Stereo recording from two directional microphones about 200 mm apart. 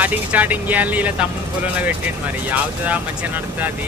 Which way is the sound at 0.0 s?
10° right (ahead or behind).